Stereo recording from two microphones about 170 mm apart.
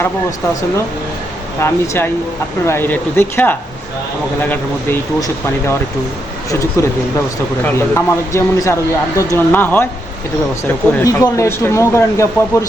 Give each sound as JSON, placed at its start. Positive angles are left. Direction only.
{"t": 1.6, "sound": "speech", "side_deg": 15}